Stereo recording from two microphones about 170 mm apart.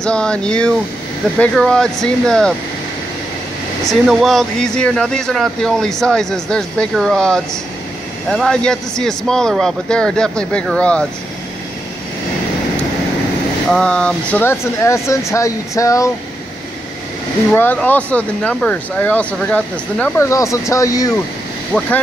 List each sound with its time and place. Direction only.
0.0 s speech: 5° left (ahead or behind)
3.8 s speech: centre (ahead or behind)
13.7 s speech: 5° left (ahead or behind)
17.6 s speech: 10° left (ahead or behind)
21.7 s speech: 10° left (ahead or behind)